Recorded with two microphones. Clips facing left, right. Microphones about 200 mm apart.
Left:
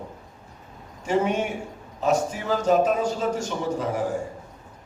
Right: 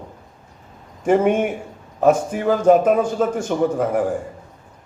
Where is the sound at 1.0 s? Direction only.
55° right (ahead or behind).